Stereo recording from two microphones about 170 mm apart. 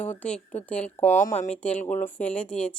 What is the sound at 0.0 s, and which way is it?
Speech, 10° left (ahead or behind).